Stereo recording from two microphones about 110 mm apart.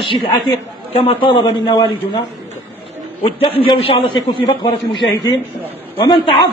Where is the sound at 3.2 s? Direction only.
50° left (ahead or behind).